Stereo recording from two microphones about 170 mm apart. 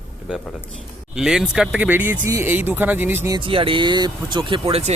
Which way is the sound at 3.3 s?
30° right (ahead or behind).